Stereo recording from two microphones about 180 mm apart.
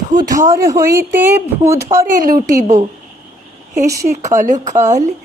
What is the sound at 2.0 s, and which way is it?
Speech, 50° right (ahead or behind).